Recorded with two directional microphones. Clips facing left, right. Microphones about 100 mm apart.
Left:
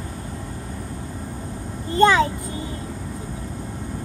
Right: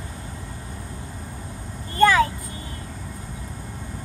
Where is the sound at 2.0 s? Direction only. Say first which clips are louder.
Left 1 dB; 20° left (ahead or behind).